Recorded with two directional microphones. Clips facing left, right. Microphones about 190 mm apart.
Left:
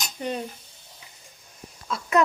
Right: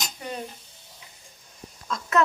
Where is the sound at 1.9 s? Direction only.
15° left (ahead or behind).